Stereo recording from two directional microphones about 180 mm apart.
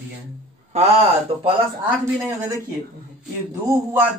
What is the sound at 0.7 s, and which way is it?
Speech, 40° right (ahead or behind).